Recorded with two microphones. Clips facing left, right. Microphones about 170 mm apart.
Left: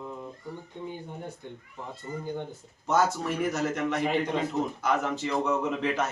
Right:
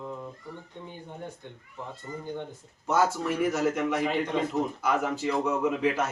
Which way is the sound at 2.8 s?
5° right (ahead or behind).